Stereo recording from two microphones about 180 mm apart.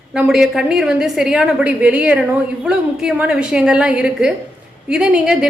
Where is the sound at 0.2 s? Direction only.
5° right (ahead or behind).